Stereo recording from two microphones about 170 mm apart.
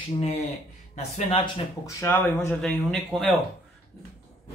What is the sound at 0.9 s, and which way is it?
Speech, 40° left (ahead or behind).